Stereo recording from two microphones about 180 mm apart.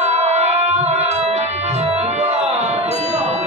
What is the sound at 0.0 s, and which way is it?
Music, 40° right (ahead or behind).